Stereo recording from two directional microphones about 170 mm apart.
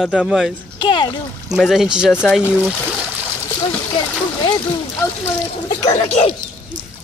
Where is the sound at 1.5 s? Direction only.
5° right (ahead or behind).